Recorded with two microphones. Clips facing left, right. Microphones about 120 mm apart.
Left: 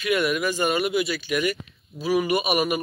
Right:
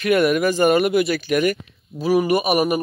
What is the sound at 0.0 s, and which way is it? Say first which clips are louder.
Speech: right 6 dB; 50° right (ahead or behind).